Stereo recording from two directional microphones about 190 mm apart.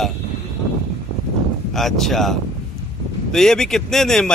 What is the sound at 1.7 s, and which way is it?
A man's voice, centre (ahead or behind).